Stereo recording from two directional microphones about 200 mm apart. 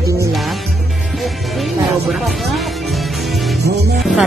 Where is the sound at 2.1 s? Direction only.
Centre (ahead or behind).